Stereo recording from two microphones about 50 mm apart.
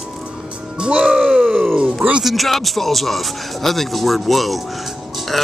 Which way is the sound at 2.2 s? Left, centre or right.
Centre.